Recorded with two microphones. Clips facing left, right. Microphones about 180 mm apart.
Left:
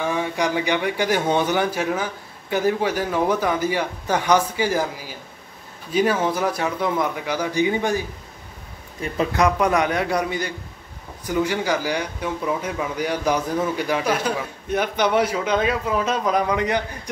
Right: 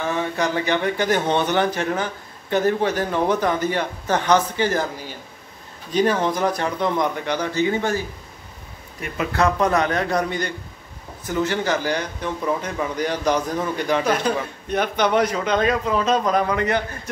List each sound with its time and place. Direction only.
0.0 s speech: 10° left (ahead or behind)
9.0 s speech: 35° left (ahead or behind)
9.3 s speech: 15° left (ahead or behind)